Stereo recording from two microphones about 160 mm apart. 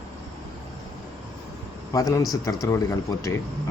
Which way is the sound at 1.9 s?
20° left (ahead or behind).